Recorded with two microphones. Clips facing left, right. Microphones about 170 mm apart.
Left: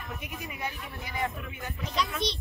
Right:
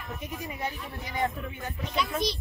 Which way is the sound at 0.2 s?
30° right (ahead or behind).